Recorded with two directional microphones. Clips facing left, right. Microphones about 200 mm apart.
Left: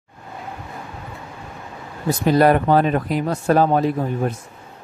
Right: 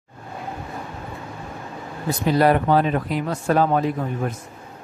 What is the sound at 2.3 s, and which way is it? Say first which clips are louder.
Speech: left 2 dB; 45° left (ahead or behind).